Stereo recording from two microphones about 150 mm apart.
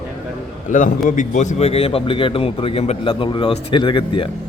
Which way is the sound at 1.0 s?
55° left (ahead or behind).